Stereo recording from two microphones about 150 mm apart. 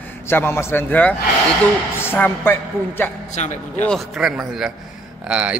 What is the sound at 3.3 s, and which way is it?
Speech, 50° left (ahead or behind).